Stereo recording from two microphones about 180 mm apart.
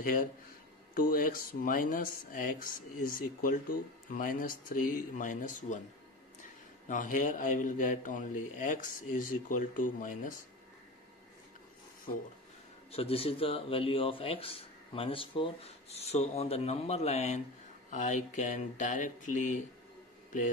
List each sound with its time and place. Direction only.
0.0 s a man's voice: 50° left (ahead or behind)
6.9 s a man's voice: 45° left (ahead or behind)
12.9 s a man's voice: 30° left (ahead or behind)